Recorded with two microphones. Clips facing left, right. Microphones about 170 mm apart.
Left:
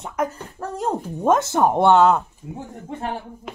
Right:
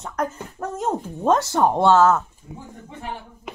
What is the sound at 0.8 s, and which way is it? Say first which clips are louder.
Speech: left 1 dB; 10° left (ahead or behind).